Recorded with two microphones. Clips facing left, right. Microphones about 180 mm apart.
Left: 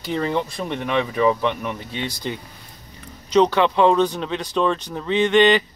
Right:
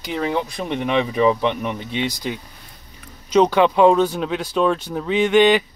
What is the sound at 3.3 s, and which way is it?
Speech, 10° right (ahead or behind).